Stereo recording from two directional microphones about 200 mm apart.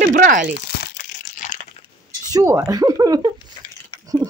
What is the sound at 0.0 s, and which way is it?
Speech, 45° right (ahead or behind).